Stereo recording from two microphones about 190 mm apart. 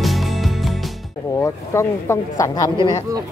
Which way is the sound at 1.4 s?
15° left (ahead or behind).